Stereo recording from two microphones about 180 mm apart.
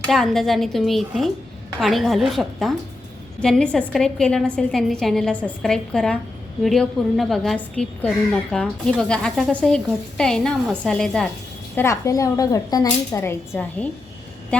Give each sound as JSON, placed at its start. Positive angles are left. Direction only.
{"t": 0.1, "sound": "a woman's voice", "side_deg": 0}